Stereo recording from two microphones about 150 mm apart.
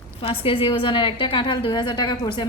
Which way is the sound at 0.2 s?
35° left (ahead or behind).